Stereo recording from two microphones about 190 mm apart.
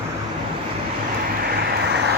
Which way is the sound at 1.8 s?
60° right (ahead or behind).